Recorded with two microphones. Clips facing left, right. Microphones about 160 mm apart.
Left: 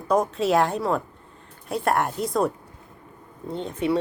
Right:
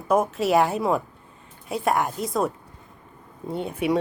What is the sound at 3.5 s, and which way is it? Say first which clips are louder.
Speech: right 1 dB; 10° right (ahead or behind).